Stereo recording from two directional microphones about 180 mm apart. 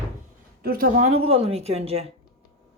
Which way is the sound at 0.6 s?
50° right (ahead or behind).